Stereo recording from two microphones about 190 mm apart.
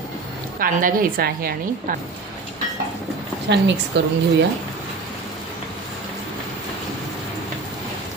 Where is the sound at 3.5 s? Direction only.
65° right (ahead or behind).